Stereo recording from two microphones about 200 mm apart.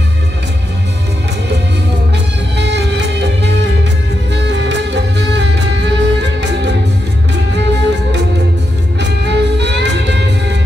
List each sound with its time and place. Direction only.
2.5 s music: 60° right (ahead or behind)